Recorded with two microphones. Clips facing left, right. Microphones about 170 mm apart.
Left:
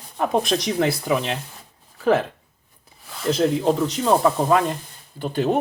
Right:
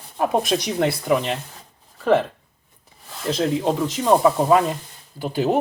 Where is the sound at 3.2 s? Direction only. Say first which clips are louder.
Left 2 dB; 5° left (ahead or behind).